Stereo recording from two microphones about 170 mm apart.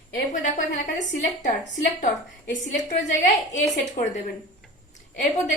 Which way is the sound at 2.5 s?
50° left (ahead or behind).